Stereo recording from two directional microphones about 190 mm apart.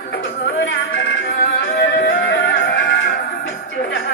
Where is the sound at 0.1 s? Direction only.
70° left (ahead or behind).